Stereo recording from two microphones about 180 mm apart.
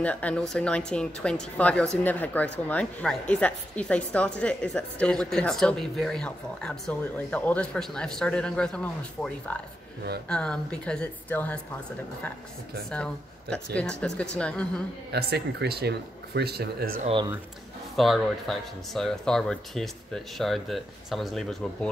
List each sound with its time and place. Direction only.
0.0 s speech: 5° left (ahead or behind)
12.9 s speech: 5° left (ahead or behind)
15.0 s speech: 65° right (ahead or behind)
17.0 s speech: 30° right (ahead or behind)
17.9 s speech: centre (ahead or behind)